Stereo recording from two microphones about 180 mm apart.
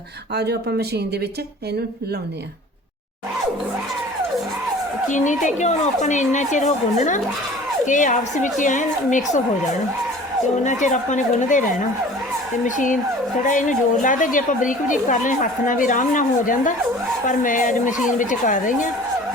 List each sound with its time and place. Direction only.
0.3 s speech: 65° right (ahead or behind)
5.0 s a woman's voice: 45° left (ahead or behind)
10.6 s a woman's voice: 40° left (ahead or behind)
12.6 s a woman's voice: 45° left (ahead or behind)